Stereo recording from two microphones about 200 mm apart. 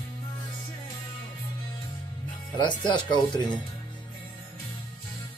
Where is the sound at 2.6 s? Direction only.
25° left (ahead or behind).